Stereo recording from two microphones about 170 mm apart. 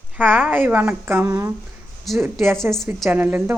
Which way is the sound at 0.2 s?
10° right (ahead or behind).